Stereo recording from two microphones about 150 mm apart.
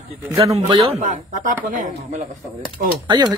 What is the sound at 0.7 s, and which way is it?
Speech, 35° right (ahead or behind).